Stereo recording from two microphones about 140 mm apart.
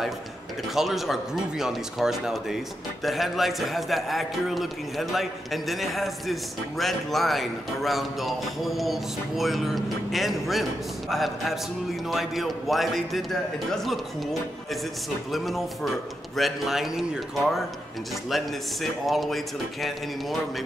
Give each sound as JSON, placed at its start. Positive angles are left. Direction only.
{"t": 0.7, "sound": "speech", "side_deg": 0}